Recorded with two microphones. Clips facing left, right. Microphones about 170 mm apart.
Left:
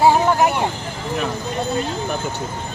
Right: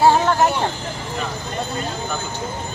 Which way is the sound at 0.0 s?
15° left (ahead or behind).